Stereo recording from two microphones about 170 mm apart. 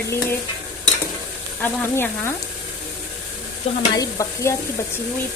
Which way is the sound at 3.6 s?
35° left (ahead or behind).